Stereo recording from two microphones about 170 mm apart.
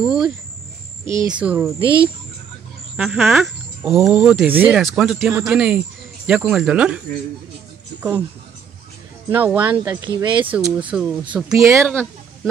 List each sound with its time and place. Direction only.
0.0 s speech: 5° right (ahead or behind)
1.1 s speech: 25° right (ahead or behind)
1.4 s speech: 10° right (ahead or behind)
1.8 s speech: 30° right (ahead or behind)
3.0 s speech: centre (ahead or behind)
9.3 s speech: 10° right (ahead or behind)
10.0 s speech: 25° right (ahead or behind)
10.4 s speech: 10° right (ahead or behind)